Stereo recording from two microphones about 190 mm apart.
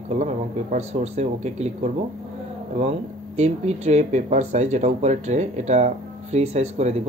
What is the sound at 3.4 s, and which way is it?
Speech, 35° right (ahead or behind).